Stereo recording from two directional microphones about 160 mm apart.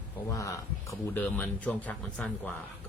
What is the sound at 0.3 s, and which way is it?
A man's voice, 20° left (ahead or behind).